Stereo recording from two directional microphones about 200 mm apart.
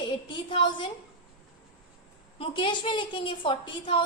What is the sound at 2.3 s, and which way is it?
A woman's voice, 25° left (ahead or behind).